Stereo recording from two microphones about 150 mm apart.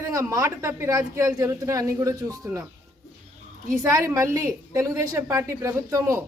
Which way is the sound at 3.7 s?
20° right (ahead or behind).